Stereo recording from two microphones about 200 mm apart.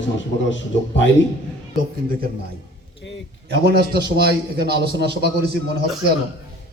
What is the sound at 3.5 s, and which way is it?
A man's voice, 55° right (ahead or behind).